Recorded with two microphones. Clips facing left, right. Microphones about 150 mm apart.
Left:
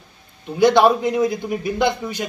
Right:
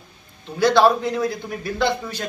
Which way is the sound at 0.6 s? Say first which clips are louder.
Left 2 dB; 15° left (ahead or behind).